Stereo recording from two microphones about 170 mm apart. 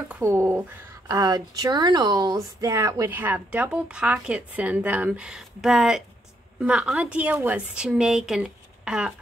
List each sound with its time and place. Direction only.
0.1 s a woman's voice: 15° right (ahead or behind)